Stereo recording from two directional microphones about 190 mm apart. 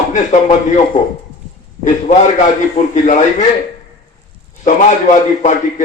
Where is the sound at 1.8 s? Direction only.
40° left (ahead or behind).